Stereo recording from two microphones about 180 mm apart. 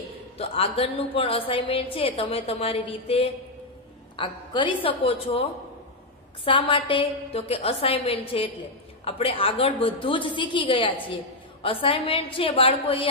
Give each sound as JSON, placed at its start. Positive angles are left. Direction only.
{"t": 0.4, "sound": "a woman's voice", "side_deg": 35}
{"t": 4.2, "sound": "a woman's voice", "side_deg": 25}